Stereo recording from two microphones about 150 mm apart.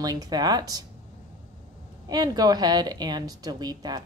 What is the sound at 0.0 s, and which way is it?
Speech, 25° right (ahead or behind).